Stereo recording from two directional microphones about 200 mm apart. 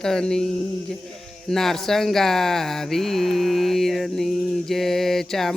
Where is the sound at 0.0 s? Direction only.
5° left (ahead or behind).